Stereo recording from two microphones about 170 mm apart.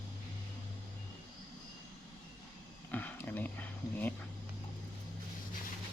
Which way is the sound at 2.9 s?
10° left (ahead or behind).